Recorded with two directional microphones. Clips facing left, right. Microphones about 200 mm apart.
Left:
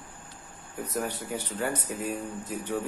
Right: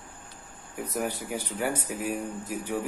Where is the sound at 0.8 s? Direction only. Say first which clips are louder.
Right 1 dB; 10° right (ahead or behind).